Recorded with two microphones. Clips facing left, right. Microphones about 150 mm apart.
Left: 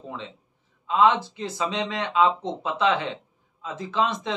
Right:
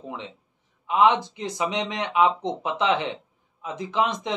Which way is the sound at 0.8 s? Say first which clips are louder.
Even; 15° right (ahead or behind).